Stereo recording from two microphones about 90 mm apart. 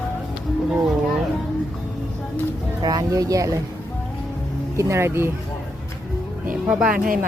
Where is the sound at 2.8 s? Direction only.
45° right (ahead or behind).